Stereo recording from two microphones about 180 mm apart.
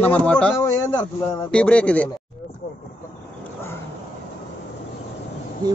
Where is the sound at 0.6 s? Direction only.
15° left (ahead or behind).